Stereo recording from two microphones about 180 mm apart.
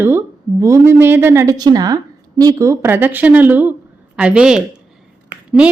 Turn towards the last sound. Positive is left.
turn(degrees=-5)  # may be behind; listen again after turning